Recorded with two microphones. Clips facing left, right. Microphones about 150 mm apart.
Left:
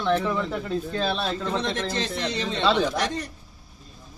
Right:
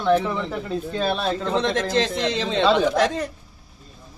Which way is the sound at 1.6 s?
90° right.